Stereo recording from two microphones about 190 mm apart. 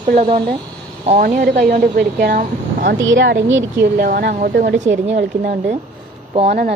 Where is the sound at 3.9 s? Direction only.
50° right (ahead or behind).